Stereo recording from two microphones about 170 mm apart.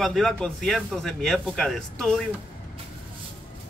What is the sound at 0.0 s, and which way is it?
Speech, centre (ahead or behind).